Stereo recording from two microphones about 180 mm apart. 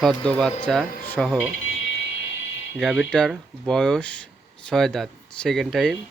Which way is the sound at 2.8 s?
Centre (ahead or behind).